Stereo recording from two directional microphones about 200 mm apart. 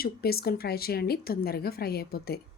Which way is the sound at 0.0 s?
50° left (ahead or behind).